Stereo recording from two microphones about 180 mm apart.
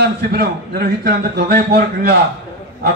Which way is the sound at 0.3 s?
60° right (ahead or behind).